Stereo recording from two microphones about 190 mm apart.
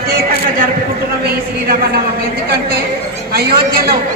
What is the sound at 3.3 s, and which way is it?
Speech, 50° right (ahead or behind).